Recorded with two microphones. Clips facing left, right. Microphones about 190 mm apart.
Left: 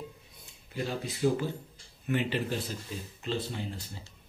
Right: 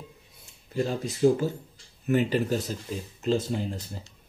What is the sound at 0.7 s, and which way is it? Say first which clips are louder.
Speech: right 6 dB; 45° right (ahead or behind).